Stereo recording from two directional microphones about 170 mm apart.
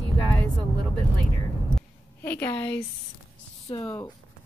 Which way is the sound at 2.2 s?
15° left (ahead or behind).